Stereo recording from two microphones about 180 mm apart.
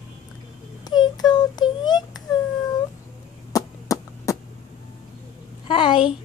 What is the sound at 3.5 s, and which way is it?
Chop, 20° left (ahead or behind).